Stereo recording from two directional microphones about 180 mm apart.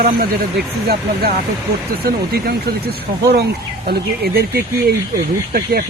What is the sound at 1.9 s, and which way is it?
Speech, 60° right (ahead or behind).